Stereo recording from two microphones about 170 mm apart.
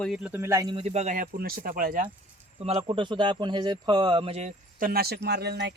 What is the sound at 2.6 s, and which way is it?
Speech, 30° right (ahead or behind).